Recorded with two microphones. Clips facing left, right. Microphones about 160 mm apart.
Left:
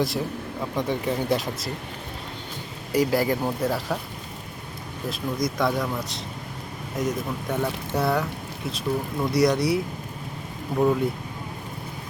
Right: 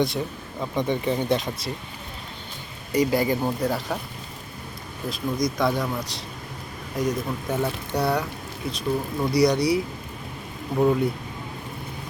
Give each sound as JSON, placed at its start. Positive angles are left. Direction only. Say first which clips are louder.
{"t": 0.0, "sound": "speech", "louder": "right 1 dB", "side_deg": 0}
{"t": 2.9, "sound": "speech", "louder": "even", "side_deg": 0}
{"t": 5.0, "sound": "speech", "louder": "right 1 dB", "side_deg": 0}
{"t": 9.2, "sound": "speech", "louder": "right 1 dB", "side_deg": 0}